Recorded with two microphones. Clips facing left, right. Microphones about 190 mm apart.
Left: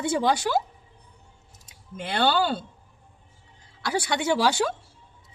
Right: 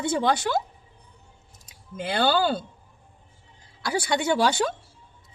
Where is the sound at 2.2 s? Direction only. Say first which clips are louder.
Right 1 dB; 40° right (ahead or behind).